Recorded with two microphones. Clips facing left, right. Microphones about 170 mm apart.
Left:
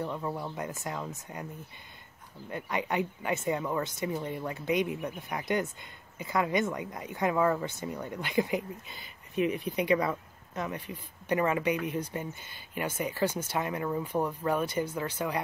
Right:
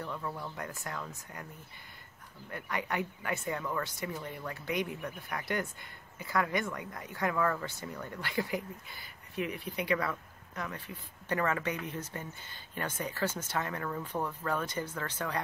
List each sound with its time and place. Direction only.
0.0 s speech: 25° left (ahead or behind)
2.5 s speech: 20° left (ahead or behind)